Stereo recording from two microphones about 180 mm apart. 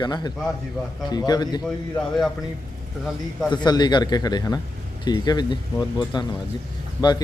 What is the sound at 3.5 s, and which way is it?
A man's voice, 25° left (ahead or behind).